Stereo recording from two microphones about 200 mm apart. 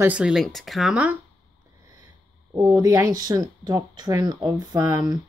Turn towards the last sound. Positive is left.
turn(degrees=-20)  # may be behind; listen again after turning